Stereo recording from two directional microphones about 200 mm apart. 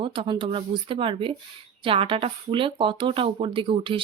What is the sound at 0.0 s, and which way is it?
Speech, 25° right (ahead or behind).